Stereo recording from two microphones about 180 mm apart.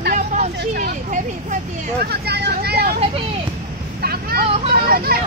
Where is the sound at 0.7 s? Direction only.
45° right (ahead or behind).